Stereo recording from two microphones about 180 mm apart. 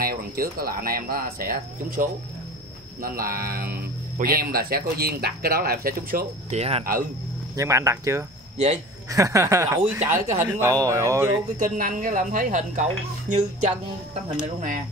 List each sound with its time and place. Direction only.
0.0 s speech: 55° right (ahead or behind)
6.5 s speech: 35° right (ahead or behind)
6.8 s speech: 50° right (ahead or behind)
7.5 s speech: 15° right (ahead or behind)
11.6 s speech: 45° right (ahead or behind)